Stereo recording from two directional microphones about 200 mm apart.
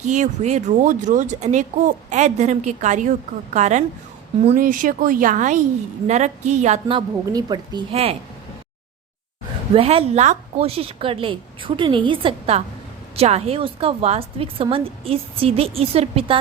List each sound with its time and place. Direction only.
0.0 s a woman's voice: 35° right (ahead or behind)
9.7 s a woman's voice: 30° right (ahead or behind)